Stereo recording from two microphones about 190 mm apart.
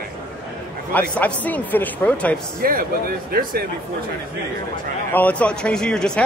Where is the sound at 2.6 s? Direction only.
50° right (ahead or behind).